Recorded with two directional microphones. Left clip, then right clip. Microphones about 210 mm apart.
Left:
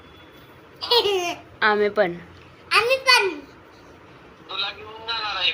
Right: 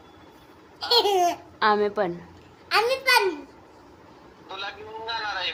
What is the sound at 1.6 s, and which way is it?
Speech, 10° right (ahead or behind).